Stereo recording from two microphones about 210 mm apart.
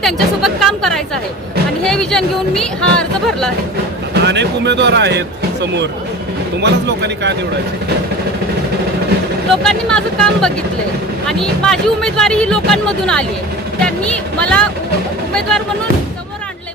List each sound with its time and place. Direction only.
0.0 s speech: centre (ahead or behind)
4.1 s speech: 55° right (ahead or behind)
6.6 s a man's voice: 55° right (ahead or behind)
9.5 s speech: 5° left (ahead or behind)